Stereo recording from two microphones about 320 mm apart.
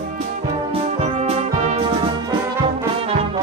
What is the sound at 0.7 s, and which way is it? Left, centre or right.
Music, centre.